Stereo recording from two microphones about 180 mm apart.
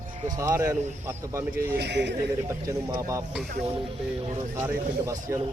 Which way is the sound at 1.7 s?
70° right (ahead or behind).